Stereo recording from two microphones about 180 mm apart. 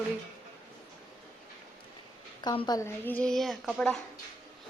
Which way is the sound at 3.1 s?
5° left (ahead or behind).